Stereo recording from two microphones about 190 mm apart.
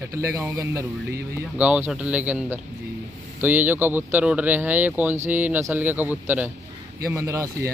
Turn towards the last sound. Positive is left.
turn(degrees=-15)  # may be behind; listen again after turning